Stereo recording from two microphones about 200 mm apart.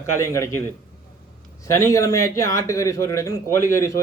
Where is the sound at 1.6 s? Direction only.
15° left (ahead or behind).